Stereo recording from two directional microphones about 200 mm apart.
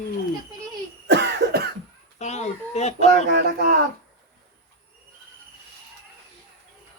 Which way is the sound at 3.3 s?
50° right (ahead or behind).